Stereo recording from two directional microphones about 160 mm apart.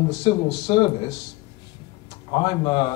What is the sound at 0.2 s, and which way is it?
Speech, 25° left (ahead or behind).